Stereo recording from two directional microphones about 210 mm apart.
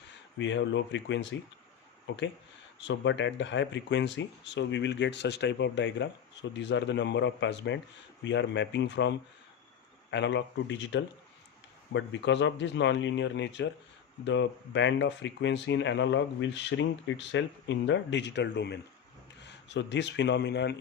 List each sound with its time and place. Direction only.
0.3 s speech: 60° left (ahead or behind)